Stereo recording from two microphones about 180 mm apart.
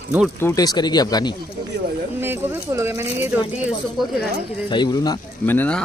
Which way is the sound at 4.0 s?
Centre (ahead or behind).